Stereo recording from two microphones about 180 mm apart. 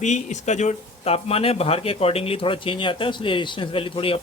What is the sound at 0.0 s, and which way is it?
Speech, 40° left (ahead or behind).